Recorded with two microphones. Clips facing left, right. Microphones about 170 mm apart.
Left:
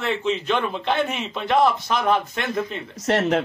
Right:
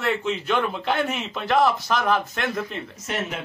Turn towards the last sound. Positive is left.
turn(degrees=75)  # may be behind; listen again after turning